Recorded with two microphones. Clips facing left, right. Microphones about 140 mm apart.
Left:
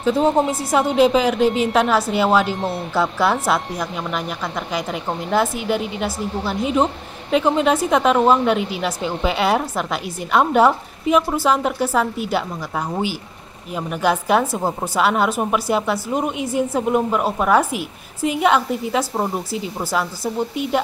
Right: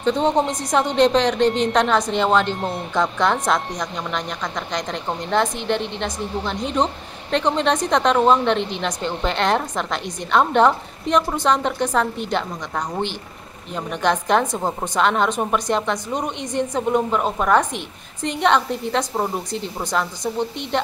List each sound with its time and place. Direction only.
0.0 s a woman's voice: 5° left (ahead or behind)